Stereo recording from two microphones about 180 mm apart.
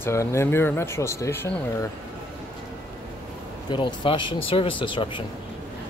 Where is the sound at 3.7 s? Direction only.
25° left (ahead or behind).